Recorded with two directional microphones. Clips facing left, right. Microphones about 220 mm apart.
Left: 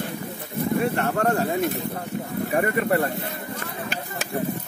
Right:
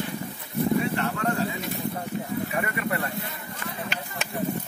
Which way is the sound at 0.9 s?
50° left (ahead or behind).